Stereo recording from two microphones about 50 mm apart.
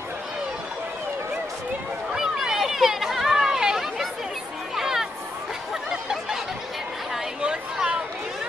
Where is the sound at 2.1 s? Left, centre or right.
Centre.